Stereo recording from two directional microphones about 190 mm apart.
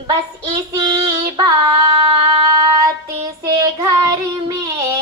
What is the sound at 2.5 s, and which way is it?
Child singing, 20° right (ahead or behind).